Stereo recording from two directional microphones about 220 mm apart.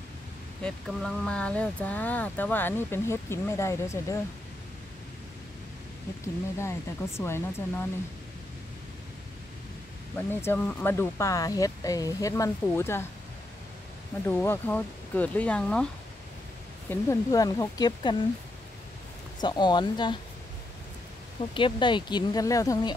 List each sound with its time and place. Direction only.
0.6 s speech: 5° left (ahead or behind)
6.6 s speech: 10° left (ahead or behind)
10.1 s speech: 10° left (ahead or behind)
14.2 s speech: 10° left (ahead or behind)
16.9 s speech: 15° left (ahead or behind)
19.4 s speech: 20° left (ahead or behind)
21.5 s speech: 20° left (ahead or behind)